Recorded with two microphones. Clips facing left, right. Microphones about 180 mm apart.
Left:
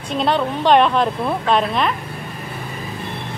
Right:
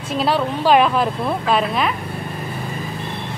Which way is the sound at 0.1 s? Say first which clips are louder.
Even; 5° right (ahead or behind).